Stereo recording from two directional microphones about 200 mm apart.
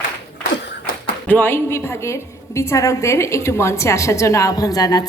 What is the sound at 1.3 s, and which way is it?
A woman's voice, 10° left (ahead or behind).